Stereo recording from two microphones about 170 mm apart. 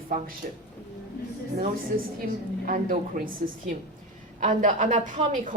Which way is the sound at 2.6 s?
55° right (ahead or behind).